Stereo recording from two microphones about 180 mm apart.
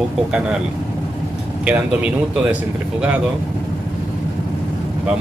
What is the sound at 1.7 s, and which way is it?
Speech, 10° right (ahead or behind).